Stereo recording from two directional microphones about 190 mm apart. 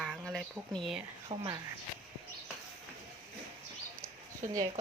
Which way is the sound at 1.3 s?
25° right (ahead or behind).